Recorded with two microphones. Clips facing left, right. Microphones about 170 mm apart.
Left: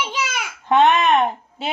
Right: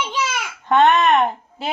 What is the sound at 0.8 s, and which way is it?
Speech, 5° left (ahead or behind).